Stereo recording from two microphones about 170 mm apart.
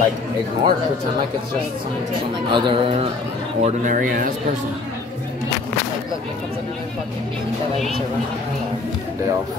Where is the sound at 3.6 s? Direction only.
50° right (ahead or behind).